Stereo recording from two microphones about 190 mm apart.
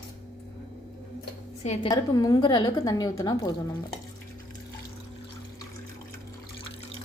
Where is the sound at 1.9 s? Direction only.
20° left (ahead or behind).